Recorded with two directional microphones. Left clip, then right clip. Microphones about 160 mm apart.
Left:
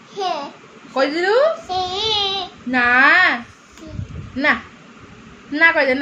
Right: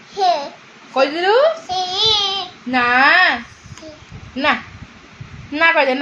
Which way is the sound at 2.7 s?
25° right (ahead or behind).